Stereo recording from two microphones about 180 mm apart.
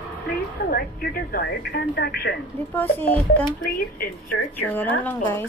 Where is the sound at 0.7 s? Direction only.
55° left (ahead or behind).